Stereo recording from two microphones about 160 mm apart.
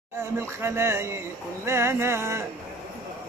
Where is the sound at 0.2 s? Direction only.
15° right (ahead or behind).